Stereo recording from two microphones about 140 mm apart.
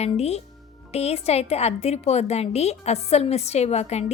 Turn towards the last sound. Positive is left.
turn(degrees=50)  # may be behind; listen again after turning